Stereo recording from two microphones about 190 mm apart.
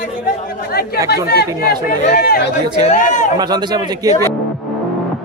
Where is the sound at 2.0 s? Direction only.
45° left (ahead or behind).